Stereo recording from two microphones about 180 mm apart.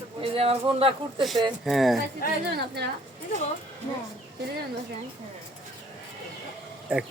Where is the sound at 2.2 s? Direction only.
55° left (ahead or behind).